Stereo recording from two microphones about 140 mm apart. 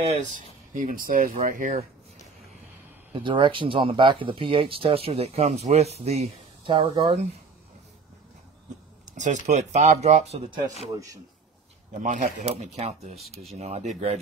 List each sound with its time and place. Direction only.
0.0 s speech: 55° right (ahead or behind)
3.1 s speech: 35° right (ahead or behind)
9.0 s speech: 60° right (ahead or behind)
12.0 s speech: 60° right (ahead or behind)